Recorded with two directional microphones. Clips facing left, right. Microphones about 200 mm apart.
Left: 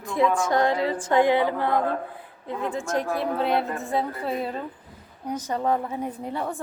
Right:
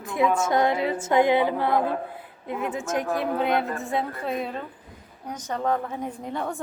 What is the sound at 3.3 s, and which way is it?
A woman's voice, centre (ahead or behind).